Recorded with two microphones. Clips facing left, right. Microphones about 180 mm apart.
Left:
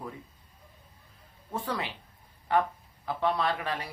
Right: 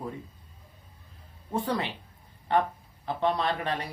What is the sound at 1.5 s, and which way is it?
Speech, 30° right (ahead or behind).